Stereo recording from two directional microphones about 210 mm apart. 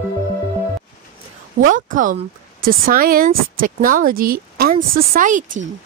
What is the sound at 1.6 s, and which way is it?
Speech, 40° right (ahead or behind).